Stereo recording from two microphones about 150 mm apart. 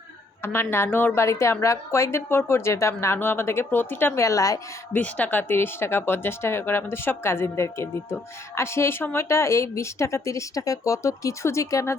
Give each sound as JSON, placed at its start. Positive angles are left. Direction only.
{"t": 0.4, "sound": "speech", "side_deg": 15}
{"t": 4.9, "sound": "speech", "side_deg": 10}